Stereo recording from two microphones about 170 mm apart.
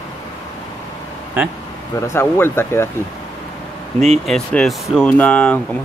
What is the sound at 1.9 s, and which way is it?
Speech, 15° left (ahead or behind).